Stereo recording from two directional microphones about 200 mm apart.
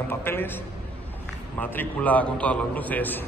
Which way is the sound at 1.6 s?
10° left (ahead or behind).